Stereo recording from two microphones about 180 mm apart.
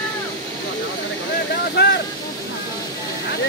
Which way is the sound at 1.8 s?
70° left (ahead or behind).